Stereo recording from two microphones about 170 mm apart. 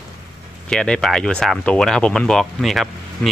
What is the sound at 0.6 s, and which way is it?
Speech, 5° left (ahead or behind).